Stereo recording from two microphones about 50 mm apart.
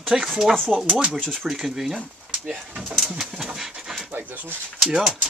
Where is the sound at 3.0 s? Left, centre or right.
Centre.